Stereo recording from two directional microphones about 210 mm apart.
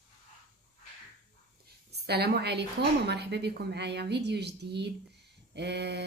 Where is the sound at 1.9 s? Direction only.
50° right (ahead or behind).